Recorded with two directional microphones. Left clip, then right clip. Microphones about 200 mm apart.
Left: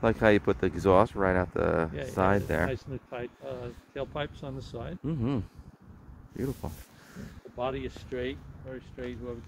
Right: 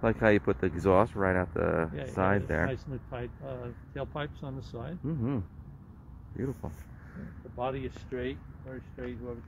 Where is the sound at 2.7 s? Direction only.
55° right (ahead or behind).